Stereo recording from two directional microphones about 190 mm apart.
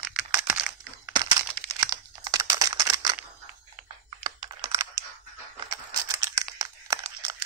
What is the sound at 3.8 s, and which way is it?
Computer keyboard, 25° right (ahead or behind).